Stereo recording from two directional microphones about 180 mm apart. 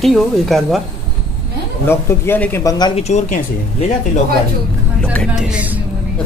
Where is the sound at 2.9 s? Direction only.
40° left (ahead or behind).